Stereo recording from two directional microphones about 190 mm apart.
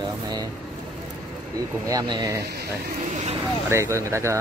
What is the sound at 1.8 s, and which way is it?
Speech, 20° right (ahead or behind).